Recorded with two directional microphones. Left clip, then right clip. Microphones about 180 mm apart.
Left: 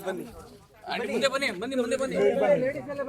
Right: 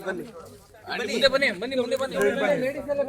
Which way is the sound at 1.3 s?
55° left (ahead or behind).